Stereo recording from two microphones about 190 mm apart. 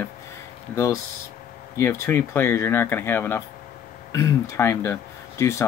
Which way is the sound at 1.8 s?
15° left (ahead or behind).